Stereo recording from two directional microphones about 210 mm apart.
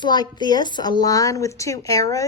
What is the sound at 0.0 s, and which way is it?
Speech, 20° left (ahead or behind).